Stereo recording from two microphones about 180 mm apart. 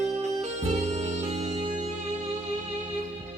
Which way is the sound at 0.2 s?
40° right (ahead or behind).